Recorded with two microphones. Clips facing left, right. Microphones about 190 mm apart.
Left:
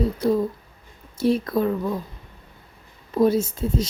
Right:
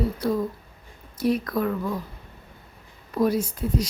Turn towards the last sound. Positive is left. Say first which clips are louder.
# left 2 dB
turn(degrees=25)  # may be behind; listen again after turning